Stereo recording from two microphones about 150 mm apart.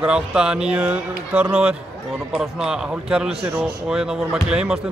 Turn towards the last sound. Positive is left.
turn(degrees=-5)  # may be behind; listen again after turning